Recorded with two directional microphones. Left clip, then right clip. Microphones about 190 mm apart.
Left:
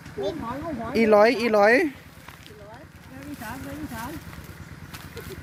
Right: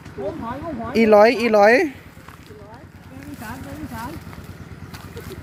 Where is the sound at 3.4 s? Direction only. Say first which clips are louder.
Right 2 dB; 5° right (ahead or behind).